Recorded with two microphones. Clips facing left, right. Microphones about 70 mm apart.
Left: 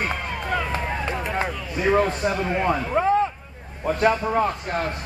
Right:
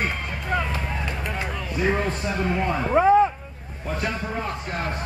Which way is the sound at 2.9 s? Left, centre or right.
Centre.